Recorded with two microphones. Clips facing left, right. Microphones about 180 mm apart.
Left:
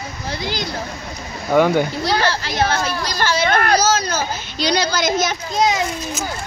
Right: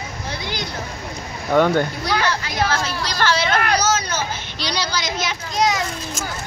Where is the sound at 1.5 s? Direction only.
10° left (ahead or behind).